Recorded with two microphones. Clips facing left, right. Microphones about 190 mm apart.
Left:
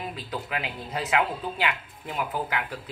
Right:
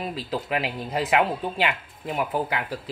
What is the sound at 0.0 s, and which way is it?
Speech, 30° right (ahead or behind).